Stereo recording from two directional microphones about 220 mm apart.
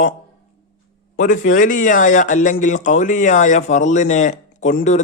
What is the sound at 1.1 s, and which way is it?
Speech, 35° left (ahead or behind).